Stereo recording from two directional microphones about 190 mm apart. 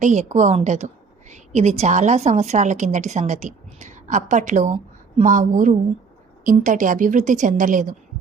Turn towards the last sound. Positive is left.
turn(degrees=-45)  # may be behind; listen again after turning